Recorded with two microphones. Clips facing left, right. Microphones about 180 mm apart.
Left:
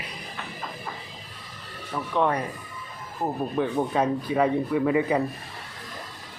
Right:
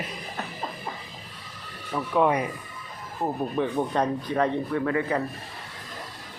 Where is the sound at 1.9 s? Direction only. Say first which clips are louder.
Right 2 dB; 5° right (ahead or behind).